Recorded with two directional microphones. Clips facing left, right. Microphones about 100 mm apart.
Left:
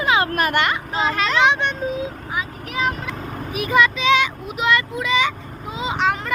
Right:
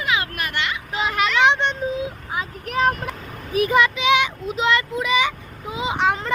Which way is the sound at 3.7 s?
20° right (ahead or behind).